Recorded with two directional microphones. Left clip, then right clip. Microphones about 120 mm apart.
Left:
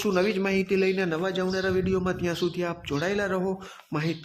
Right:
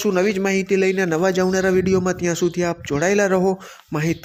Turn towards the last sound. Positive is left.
turn(degrees=-45)  # may be behind; listen again after turning